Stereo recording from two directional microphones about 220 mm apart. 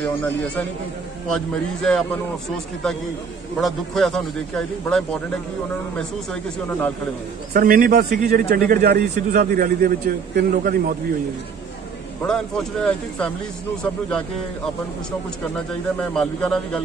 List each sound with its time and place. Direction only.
1.3 s a man's voice: centre (ahead or behind)
3.5 s a man's voice: centre (ahead or behind)
7.5 s a man's voice: 40° right (ahead or behind)
12.2 s a man's voice: 5° left (ahead or behind)
16.0 s a man's voice: 5° left (ahead or behind)